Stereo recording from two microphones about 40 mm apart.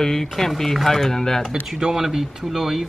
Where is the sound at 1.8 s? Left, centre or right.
Centre.